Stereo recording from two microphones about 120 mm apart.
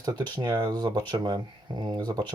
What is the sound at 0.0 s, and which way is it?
Speech, 35° right (ahead or behind).